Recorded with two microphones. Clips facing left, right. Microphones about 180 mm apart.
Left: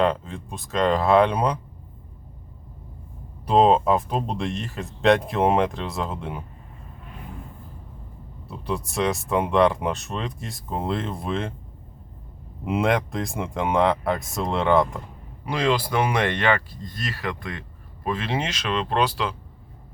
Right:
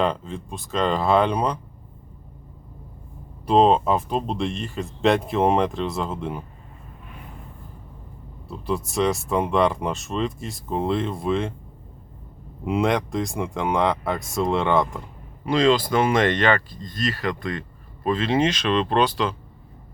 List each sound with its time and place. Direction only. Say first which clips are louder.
0.0 s speech: left 1 dB; centre (ahead or behind)
3.4 s speech: even; centre (ahead or behind)
8.4 s speech: right 2 dB; centre (ahead or behind)
12.6 s speech: right 1 dB; centre (ahead or behind)